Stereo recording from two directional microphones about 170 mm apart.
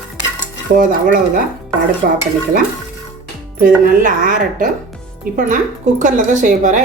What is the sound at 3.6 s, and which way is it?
Speech, 50° right (ahead or behind).